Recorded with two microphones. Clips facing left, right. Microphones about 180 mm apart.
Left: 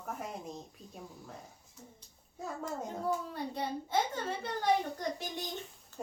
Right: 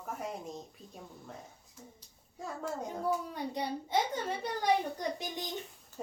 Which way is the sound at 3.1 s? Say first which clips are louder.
Right 1 dB; 15° right (ahead or behind).